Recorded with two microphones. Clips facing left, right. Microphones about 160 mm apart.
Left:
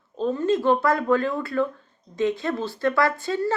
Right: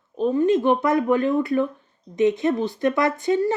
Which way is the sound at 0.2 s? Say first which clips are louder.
Right 4 dB; 15° right (ahead or behind).